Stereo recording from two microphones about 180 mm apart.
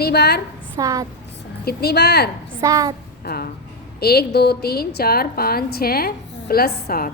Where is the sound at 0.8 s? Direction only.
20° right (ahead or behind).